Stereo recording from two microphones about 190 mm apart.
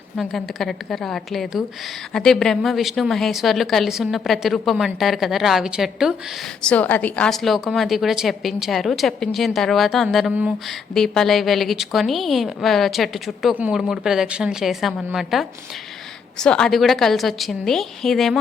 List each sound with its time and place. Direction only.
0.2 s a woman's voice: centre (ahead or behind)